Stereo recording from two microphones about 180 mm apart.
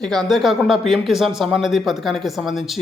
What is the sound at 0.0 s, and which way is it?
A man's voice, centre (ahead or behind).